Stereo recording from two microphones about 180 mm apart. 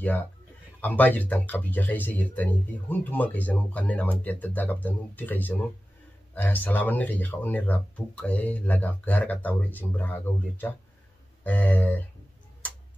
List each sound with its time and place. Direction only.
0.7 s speech: 10° left (ahead or behind)